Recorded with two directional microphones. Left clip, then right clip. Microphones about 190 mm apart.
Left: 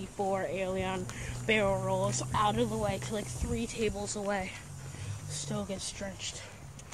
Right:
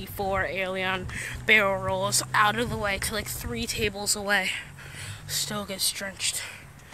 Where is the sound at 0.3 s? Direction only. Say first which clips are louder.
Right 6 dB; 5° right (ahead or behind).